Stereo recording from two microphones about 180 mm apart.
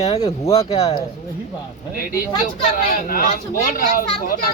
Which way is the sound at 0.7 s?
35° left (ahead or behind).